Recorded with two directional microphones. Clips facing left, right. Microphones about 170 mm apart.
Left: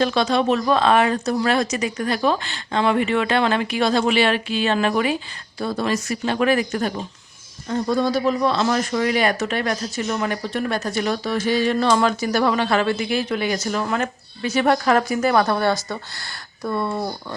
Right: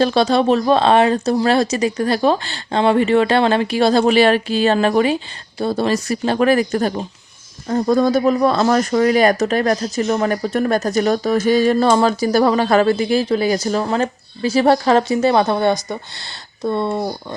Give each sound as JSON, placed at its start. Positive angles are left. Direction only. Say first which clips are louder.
{"t": 0.0, "sound": "speech", "louder": "right 4 dB", "side_deg": -35}